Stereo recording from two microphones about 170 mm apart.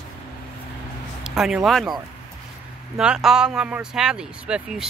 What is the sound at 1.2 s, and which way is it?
Speech, 5° right (ahead or behind).